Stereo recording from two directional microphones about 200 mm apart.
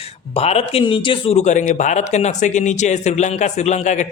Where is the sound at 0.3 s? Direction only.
30° left (ahead or behind).